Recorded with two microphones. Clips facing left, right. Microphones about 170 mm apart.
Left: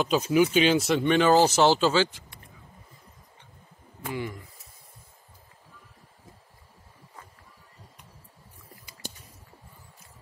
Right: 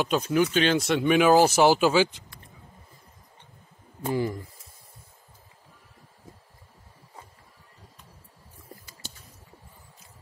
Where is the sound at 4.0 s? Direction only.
35° right (ahead or behind).